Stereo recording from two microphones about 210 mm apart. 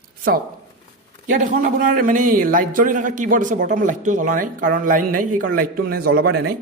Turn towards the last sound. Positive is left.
turn(degrees=-45)  # may be behind; listen again after turning